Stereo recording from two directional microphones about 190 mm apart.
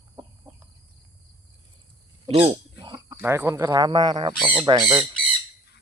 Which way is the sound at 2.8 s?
20° right (ahead or behind).